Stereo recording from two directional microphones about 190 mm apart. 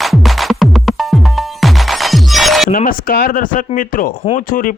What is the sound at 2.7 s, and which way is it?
Speech, 45° left (ahead or behind).